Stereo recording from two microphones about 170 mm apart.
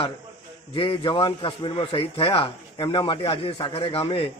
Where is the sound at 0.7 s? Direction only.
30° left (ahead or behind).